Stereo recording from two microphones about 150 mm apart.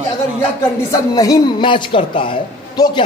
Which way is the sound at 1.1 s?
25° left (ahead or behind).